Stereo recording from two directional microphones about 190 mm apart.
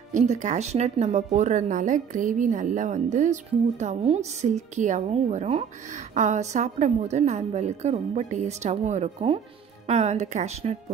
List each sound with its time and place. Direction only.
0.1 s speech: 40° right (ahead or behind)